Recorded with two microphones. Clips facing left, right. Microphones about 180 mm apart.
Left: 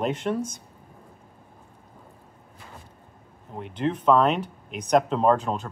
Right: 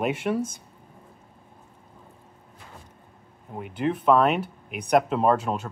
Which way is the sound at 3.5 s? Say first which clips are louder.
Even; 5° right (ahead or behind).